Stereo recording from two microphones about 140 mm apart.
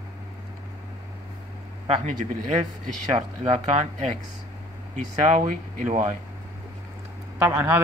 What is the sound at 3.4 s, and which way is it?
Speech, 55° right (ahead or behind).